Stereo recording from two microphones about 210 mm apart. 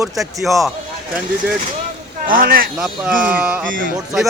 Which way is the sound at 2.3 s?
45° right (ahead or behind).